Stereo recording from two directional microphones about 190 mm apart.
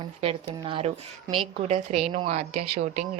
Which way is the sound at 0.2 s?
30° right (ahead or behind).